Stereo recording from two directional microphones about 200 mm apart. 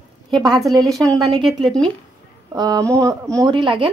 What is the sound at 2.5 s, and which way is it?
A woman's voice, 20° right (ahead or behind).